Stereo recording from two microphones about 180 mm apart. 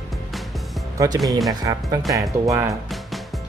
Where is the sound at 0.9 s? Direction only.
20° right (ahead or behind).